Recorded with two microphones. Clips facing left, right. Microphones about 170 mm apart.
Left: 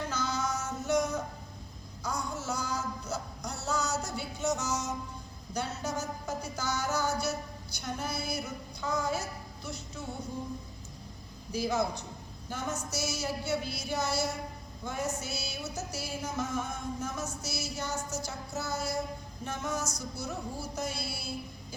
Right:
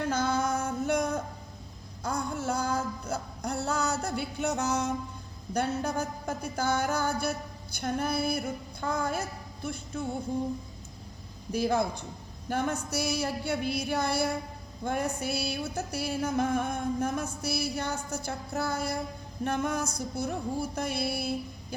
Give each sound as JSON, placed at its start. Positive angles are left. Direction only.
{"t": 0.1, "sound": "music", "side_deg": -55}
{"t": 2.0, "sound": "a sound", "side_deg": -55}
{"t": 5.5, "sound": "music", "side_deg": -55}
{"t": 11.5, "sound": "music", "side_deg": -55}